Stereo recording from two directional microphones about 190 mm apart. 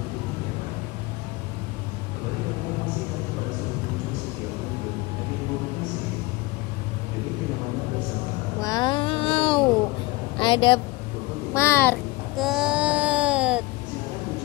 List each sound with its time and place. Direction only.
8.5 s a sound: 20° left (ahead or behind)
10.4 s speech: 25° left (ahead or behind)
11.5 s a child's voice: 10° left (ahead or behind)
12.4 s baby cry: centre (ahead or behind)